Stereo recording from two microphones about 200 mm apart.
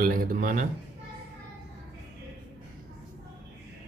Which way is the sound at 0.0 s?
45° right (ahead or behind).